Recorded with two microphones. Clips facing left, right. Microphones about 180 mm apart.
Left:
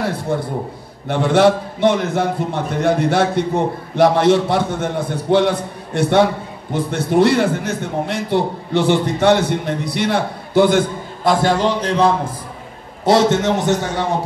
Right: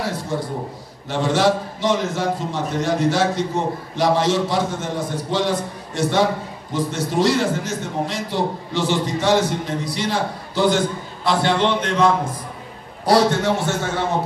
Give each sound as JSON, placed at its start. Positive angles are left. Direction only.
{"t": 0.0, "sound": "a man's voice", "side_deg": 60}
{"t": 11.2, "sound": "a man's voice", "side_deg": 45}